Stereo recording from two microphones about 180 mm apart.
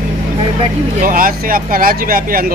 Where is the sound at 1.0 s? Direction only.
50° right (ahead or behind).